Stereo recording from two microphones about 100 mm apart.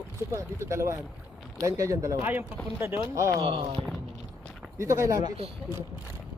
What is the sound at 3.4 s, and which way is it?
Speech, 65° right (ahead or behind).